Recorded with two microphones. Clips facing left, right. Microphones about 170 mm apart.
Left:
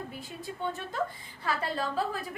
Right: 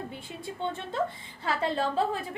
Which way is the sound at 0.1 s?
25° right (ahead or behind).